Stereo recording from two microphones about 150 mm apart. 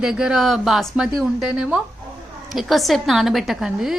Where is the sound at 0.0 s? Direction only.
5° right (ahead or behind).